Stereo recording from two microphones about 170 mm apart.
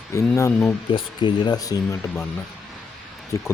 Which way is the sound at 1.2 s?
25° left (ahead or behind).